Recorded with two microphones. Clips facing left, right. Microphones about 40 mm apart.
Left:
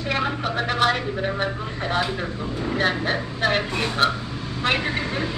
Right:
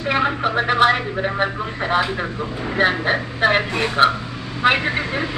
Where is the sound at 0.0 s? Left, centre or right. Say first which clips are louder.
Right 5 dB; centre.